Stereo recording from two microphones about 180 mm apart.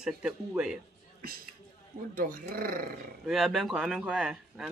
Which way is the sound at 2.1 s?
50° right (ahead or behind).